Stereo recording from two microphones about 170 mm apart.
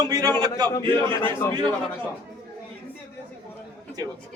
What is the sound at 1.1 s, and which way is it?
Speech, 15° left (ahead or behind).